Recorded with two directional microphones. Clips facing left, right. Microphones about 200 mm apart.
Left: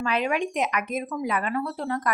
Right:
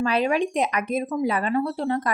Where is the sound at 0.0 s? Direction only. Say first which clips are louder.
Right 4 dB; 35° right (ahead or behind).